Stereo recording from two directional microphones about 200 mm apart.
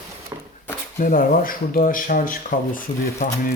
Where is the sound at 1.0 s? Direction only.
45° left (ahead or behind).